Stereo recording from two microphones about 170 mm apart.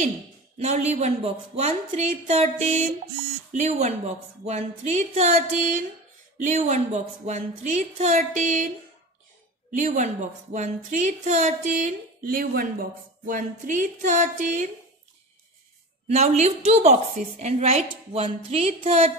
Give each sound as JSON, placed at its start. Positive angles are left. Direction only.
{"t": 0.6, "sound": "a woman's voice", "side_deg": -40}
{"t": 16.1, "sound": "a woman's voice", "side_deg": -40}